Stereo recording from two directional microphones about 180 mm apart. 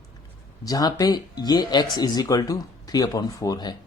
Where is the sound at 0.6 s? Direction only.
20° left (ahead or behind).